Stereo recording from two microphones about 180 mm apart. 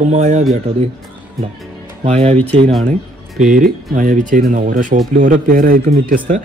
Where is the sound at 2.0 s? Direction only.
35° right (ahead or behind).